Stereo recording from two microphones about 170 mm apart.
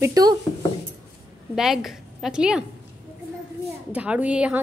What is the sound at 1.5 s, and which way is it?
A woman's voice, centre (ahead or behind).